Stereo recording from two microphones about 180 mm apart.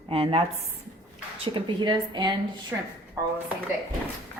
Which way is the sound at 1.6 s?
25° right (ahead or behind).